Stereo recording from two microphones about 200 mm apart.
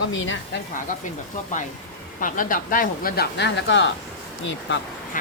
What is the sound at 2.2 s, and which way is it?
Speech, 45° left (ahead or behind).